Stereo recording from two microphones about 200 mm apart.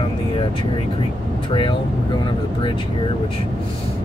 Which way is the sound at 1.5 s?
25° left (ahead or behind).